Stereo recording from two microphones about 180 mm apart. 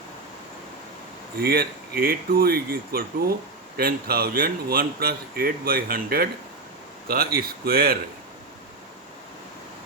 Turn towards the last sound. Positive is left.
turn(degrees=-55)  # may be behind; listen again after turning